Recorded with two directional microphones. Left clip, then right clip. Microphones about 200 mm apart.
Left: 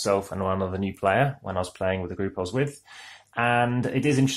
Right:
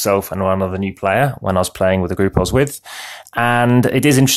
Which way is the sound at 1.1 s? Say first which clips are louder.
Right 9 dB; 45° right (ahead or behind).